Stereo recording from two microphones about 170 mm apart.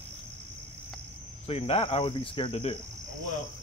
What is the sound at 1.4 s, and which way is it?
Cricket, 35° left (ahead or behind).